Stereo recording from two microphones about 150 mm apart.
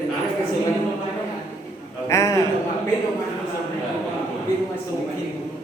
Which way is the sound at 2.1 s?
20° left (ahead or behind).